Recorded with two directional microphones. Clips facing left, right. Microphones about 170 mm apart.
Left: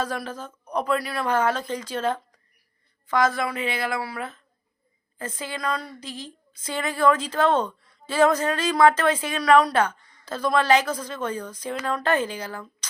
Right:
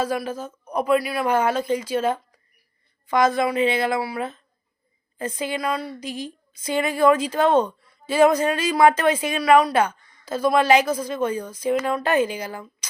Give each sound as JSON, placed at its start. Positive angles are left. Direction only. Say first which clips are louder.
{"t": 0.0, "sound": "a woman's voice", "louder": "right 4 dB", "side_deg": -10}